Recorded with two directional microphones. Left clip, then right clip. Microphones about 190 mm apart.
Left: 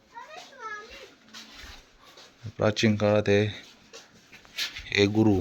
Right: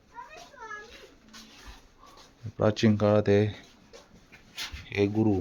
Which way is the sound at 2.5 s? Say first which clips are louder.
Left 1 dB; 15° right (ahead or behind).